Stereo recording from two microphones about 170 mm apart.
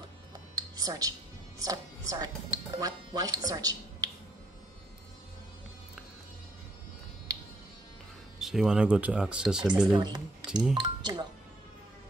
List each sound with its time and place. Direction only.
0.6 s a sound: 20° right (ahead or behind)
1.6 s speech: 20° right (ahead or behind)
8.4 s speech: centre (ahead or behind)
9.9 s speech: 25° right (ahead or behind)